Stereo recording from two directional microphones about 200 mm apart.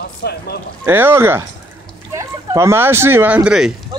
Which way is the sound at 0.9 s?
10° right (ahead or behind).